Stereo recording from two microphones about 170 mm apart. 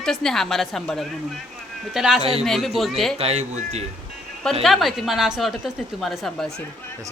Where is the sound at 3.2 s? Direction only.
40° right (ahead or behind).